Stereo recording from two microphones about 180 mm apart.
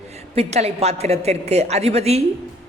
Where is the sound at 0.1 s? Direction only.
35° right (ahead or behind).